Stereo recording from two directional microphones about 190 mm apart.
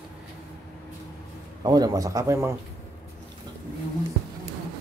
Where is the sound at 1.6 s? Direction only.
20° right (ahead or behind).